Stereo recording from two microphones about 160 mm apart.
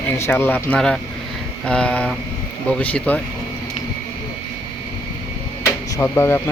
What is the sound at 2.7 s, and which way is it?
Speech, 10° left (ahead or behind).